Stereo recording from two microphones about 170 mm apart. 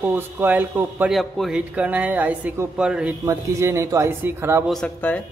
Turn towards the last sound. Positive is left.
turn(degrees=5)  # may be behind; listen again after turning